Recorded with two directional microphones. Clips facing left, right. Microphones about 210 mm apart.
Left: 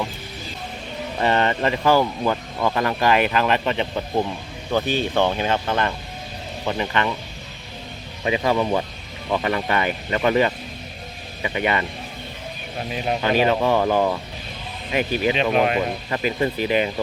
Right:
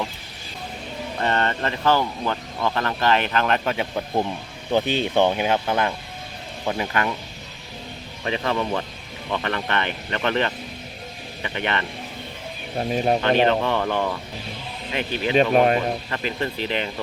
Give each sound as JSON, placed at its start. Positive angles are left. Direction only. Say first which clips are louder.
{"t": 1.2, "sound": "speech", "louder": "left 4 dB", "side_deg": 10}
{"t": 4.7, "sound": "speech", "louder": "right 1 dB", "side_deg": -15}
{"t": 8.2, "sound": "speech", "louder": "left 4 dB", "side_deg": 10}
{"t": 13.2, "sound": "speech", "louder": "left 5 dB", "side_deg": 10}
{"t": 15.4, "sound": "speech", "louder": "right 6 dB", "side_deg": -40}
{"t": 16.0, "sound": "speech", "louder": "left 4 dB", "side_deg": 15}